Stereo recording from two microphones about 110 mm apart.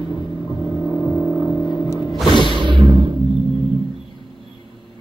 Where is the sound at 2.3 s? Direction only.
50° left (ahead or behind).